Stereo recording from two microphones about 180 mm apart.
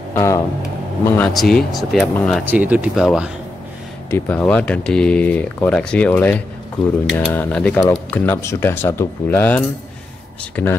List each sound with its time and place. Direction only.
0.1 s speech: 15° left (ahead or behind)
2.3 s speech: 10° right (ahead or behind)
4.1 s speech: 10° left (ahead or behind)